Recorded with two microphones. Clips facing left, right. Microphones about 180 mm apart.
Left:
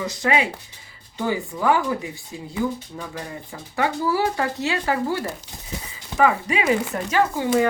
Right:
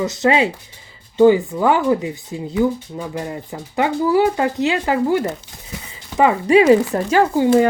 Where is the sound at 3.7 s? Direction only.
20° right (ahead or behind).